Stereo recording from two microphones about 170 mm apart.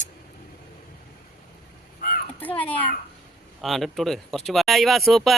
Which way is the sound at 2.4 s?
10° left (ahead or behind).